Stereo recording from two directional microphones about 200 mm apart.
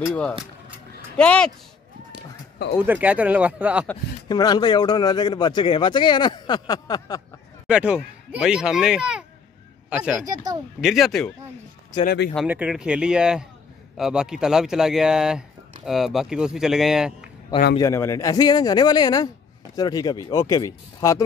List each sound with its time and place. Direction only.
0.0 s speech: 5° left (ahead or behind)
2.8 s speech: 10° right (ahead or behind)
4.3 s speech: 20° left (ahead or behind)
7.6 s speech: 5° right (ahead or behind)
10.2 s speech: 20° right (ahead or behind)
10.8 s speech: centre (ahead or behind)
12.0 s speech: 50° left (ahead or behind)
12.4 s speech: 5° right (ahead or behind)
17.7 s speech: 15° left (ahead or behind)